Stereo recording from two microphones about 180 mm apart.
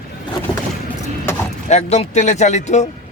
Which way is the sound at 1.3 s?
15° left (ahead or behind).